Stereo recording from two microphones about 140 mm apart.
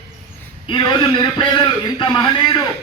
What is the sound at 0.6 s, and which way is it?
A man's voice, 35° left (ahead or behind).